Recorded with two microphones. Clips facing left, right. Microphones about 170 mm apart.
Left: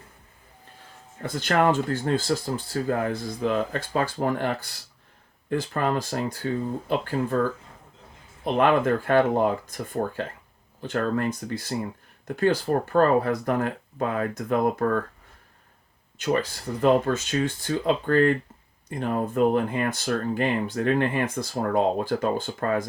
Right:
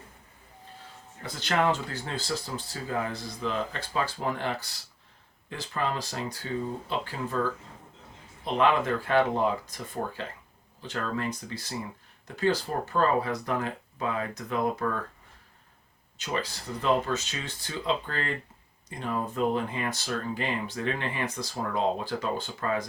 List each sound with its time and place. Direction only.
1.2 s speech: 50° left (ahead or behind)
8.5 s speech: 50° left (ahead or behind)
16.1 s speech: 50° left (ahead or behind)